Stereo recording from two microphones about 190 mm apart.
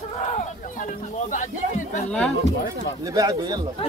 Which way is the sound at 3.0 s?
20° right (ahead or behind).